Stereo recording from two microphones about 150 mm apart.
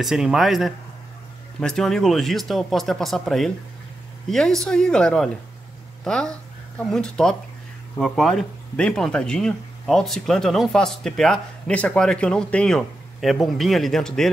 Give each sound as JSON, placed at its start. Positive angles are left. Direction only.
{"t": 0.0, "sound": "speech", "side_deg": -5}